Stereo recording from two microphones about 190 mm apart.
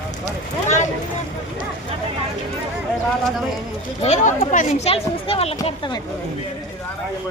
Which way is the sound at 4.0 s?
35° left (ahead or behind).